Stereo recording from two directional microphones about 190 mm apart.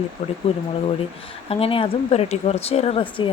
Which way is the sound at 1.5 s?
30° left (ahead or behind).